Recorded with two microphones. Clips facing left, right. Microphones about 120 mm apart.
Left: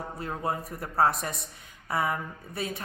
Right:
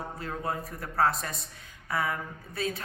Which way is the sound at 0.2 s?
25° left (ahead or behind).